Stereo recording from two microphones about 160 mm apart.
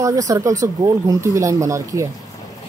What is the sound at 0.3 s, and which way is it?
Speech, 20° right (ahead or behind).